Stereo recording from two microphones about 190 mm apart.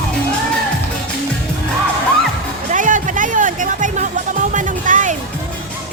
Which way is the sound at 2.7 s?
45° right (ahead or behind).